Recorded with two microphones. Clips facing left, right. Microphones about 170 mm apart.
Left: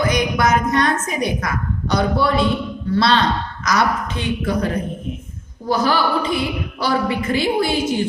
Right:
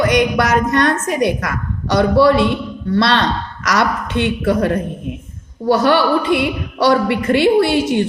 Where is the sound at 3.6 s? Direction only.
75° right (ahead or behind).